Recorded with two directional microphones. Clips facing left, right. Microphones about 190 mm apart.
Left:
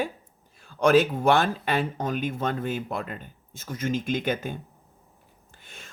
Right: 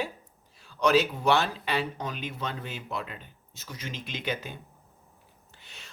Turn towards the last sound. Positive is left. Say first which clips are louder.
# left 4 dB
turn(degrees=50)  # may be behind; listen again after turning